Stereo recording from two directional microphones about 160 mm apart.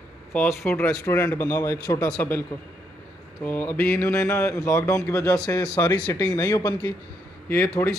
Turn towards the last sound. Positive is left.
turn(degrees=15)  # may be behind; listen again after turning